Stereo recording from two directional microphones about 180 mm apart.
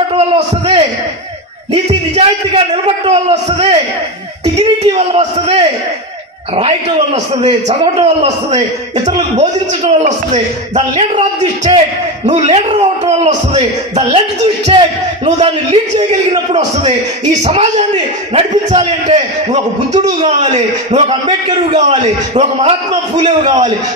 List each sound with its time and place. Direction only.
0.1 s a man's voice: 25° right (ahead or behind)
7.4 s a man's voice: 35° right (ahead or behind)
12.3 s a man's voice: 35° right (ahead or behind)